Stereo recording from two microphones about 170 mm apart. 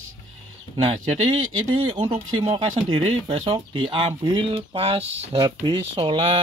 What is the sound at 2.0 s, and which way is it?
Speech, 35° right (ahead or behind).